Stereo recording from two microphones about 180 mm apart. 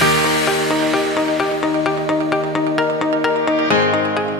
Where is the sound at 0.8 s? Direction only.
Centre (ahead or behind).